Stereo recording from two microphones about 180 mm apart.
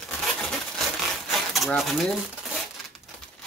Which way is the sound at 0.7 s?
Centre (ahead or behind).